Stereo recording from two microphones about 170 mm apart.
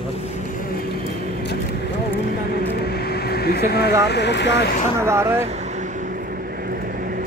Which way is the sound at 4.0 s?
80° left.